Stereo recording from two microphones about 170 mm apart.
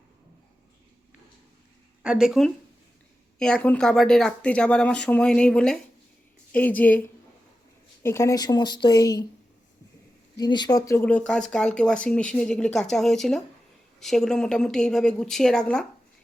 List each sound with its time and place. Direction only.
2.0 s a woman's voice: 5° right (ahead or behind); by 9.2 s 20° left (ahead or behind)
10.3 s speech: 25° left (ahead or behind); by 15.9 s 5° left (ahead or behind)